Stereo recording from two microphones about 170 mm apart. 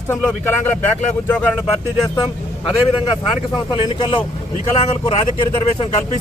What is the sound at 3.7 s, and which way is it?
Speech, 25° left (ahead or behind).